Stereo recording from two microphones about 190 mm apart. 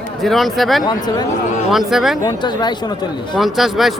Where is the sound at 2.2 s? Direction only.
20° left (ahead or behind).